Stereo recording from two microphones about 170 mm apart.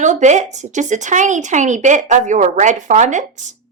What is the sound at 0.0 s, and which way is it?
Speech, 45° right (ahead or behind).